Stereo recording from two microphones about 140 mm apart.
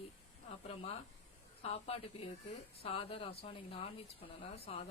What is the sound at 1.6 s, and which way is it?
Speech, 45° left (ahead or behind).